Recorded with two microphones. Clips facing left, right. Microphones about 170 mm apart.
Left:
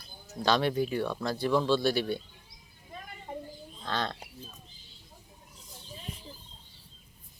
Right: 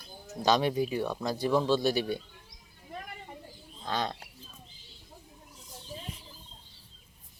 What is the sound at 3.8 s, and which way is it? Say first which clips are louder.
Speech: right 1 dB; 10° right (ahead or behind).